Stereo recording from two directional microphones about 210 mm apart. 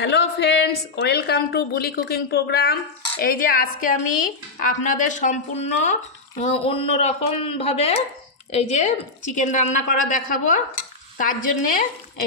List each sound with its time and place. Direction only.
0.0 s a woman's voice: 55° left (ahead or behind)